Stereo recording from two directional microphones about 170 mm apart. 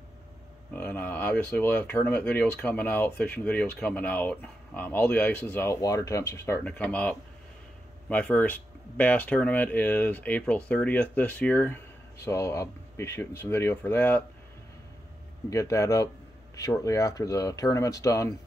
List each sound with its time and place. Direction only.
0.7 s speech: 10° left (ahead or behind)
15.5 s speech: 20° left (ahead or behind)